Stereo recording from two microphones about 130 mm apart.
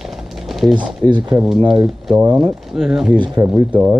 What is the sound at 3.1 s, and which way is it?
Speech, 35° right (ahead or behind).